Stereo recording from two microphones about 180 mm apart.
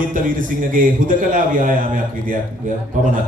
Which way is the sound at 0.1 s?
50° right (ahead or behind).